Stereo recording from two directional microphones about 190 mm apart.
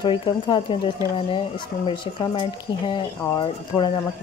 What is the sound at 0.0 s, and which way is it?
Speech, 25° left (ahead or behind).